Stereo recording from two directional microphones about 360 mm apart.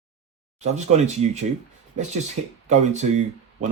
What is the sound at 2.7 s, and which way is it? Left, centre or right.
Speech, centre.